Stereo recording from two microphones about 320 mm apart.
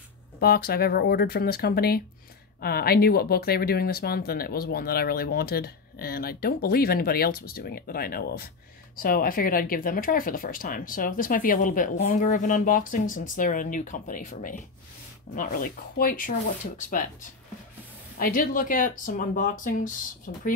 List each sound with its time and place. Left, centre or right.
0.4 s speech: left
18.1 s speech: left